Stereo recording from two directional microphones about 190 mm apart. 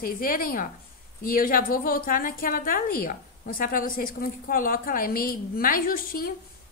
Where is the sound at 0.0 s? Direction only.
50° left (ahead or behind).